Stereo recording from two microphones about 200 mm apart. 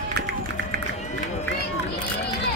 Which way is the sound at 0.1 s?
55° right (ahead or behind).